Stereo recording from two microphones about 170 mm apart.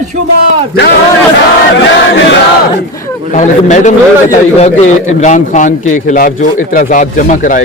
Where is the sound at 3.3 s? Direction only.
45° left (ahead or behind).